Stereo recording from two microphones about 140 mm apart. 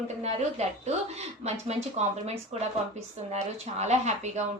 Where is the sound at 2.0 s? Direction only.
50° right (ahead or behind).